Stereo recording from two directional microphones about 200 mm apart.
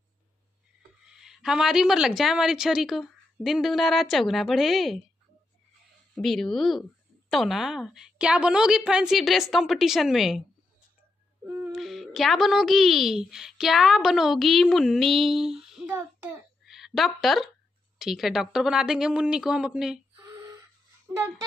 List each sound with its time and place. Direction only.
1.0 s a woman's voice: centre (ahead or behind)
6.1 s a woman's voice: centre (ahead or behind)
11.4 s speech: 10° right (ahead or behind)
16.6 s a woman's voice: centre (ahead or behind)
20.2 s gasp: 15° right (ahead or behind)